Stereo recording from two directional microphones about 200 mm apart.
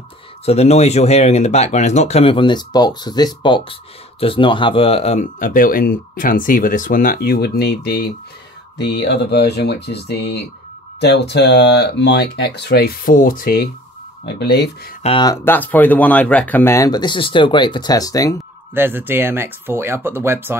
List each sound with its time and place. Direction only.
0.5 s speech: 30° left (ahead or behind); by 14.7 s 55° left (ahead or behind)
15.0 s speech: 20° left (ahead or behind)
18.8 s speech: 10° right (ahead or behind)